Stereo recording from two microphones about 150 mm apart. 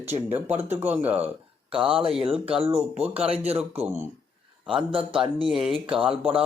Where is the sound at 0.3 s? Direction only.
15° right (ahead or behind).